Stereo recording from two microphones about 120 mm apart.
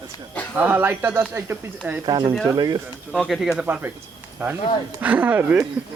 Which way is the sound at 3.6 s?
15° right (ahead or behind).